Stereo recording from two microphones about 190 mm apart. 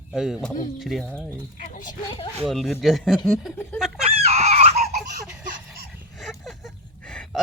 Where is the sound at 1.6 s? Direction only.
45° left (ahead or behind).